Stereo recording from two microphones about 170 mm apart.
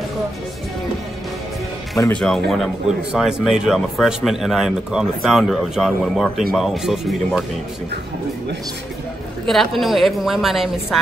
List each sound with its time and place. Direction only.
2.1 s speech: centre (ahead or behind)
9.5 s speech: centre (ahead or behind)